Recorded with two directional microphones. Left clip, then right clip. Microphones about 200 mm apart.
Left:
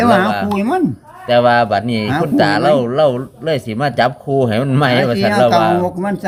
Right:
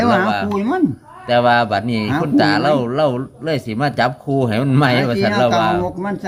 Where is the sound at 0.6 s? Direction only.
50° left (ahead or behind).